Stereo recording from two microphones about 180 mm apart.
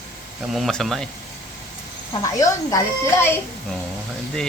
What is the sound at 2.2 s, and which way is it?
Speech, 20° left (ahead or behind).